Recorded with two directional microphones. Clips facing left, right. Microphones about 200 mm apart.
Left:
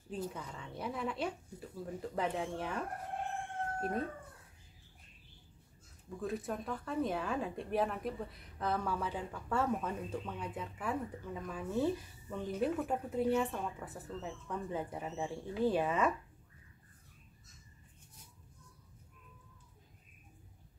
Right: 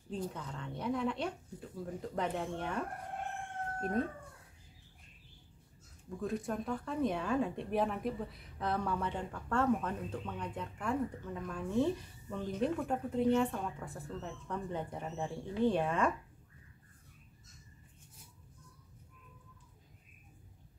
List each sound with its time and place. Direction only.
0.1 s speech: 5° left (ahead or behind)
6.0 s speech: centre (ahead or behind)